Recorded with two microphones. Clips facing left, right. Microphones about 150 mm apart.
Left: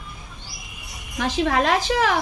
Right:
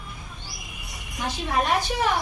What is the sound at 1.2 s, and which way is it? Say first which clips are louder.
Speech: left 5 dB; 90° left.